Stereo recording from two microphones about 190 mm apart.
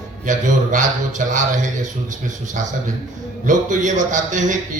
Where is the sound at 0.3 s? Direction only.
40° right (ahead or behind).